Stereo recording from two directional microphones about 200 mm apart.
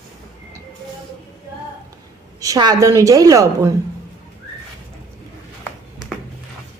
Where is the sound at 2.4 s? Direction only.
20° right (ahead or behind).